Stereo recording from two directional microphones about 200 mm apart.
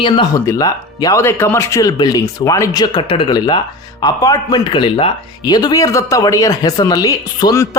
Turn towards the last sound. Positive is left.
turn(degrees=15)  # may be behind; listen again after turning